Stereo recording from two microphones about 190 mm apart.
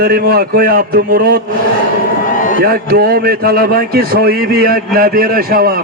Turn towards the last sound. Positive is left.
turn(degrees=-50)  # may be behind; listen again after turning